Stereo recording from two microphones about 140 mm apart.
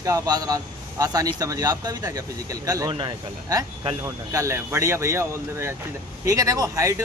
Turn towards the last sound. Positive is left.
turn(degrees=-25)  # may be behind; listen again after turning